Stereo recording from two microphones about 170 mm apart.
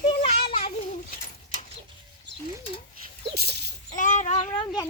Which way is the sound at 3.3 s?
75° right (ahead or behind).